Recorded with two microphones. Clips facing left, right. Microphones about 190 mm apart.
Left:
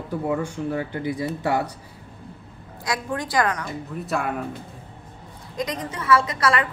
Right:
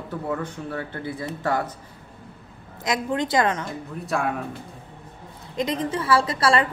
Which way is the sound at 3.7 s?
Centre (ahead or behind).